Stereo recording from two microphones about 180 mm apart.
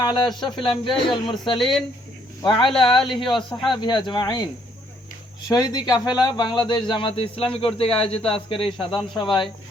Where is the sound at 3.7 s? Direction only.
25° left (ahead or behind).